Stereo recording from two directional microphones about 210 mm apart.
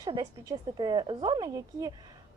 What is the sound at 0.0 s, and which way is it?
Speech, 20° right (ahead or behind).